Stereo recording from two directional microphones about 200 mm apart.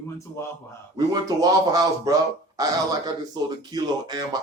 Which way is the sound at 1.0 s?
20° right (ahead or behind).